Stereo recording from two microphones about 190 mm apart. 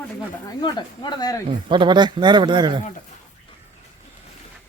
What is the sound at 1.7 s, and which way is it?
Speech, 25° right (ahead or behind).